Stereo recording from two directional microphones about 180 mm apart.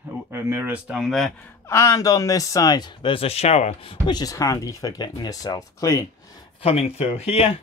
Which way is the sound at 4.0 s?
20° left (ahead or behind).